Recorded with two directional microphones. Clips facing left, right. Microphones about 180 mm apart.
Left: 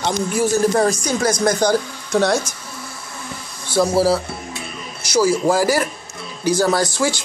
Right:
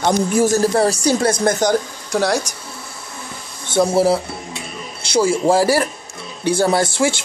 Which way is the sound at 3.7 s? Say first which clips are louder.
Right 1 dB; 25° right (ahead or behind).